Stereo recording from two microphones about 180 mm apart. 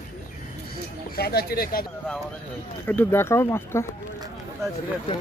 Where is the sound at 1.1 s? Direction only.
60° left (ahead or behind).